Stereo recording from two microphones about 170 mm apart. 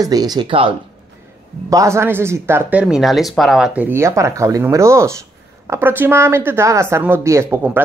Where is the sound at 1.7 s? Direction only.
15° right (ahead or behind); by 3.7 s centre (ahead or behind).